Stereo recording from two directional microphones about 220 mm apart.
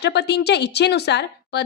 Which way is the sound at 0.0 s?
50° left (ahead or behind).